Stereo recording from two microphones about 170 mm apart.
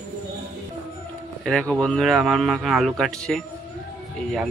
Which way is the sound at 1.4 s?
Centre (ahead or behind).